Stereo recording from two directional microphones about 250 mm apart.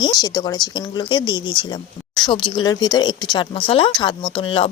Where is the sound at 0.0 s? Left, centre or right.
Centre.